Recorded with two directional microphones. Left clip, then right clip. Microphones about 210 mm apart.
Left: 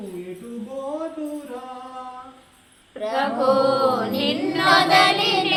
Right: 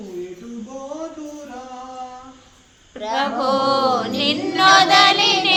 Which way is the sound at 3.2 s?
45° right (ahead or behind).